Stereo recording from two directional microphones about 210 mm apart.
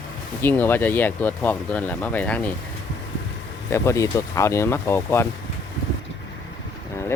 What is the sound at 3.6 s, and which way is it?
Speech, 15° left (ahead or behind).